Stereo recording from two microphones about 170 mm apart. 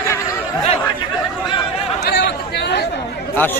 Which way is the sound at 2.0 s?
75° left (ahead or behind).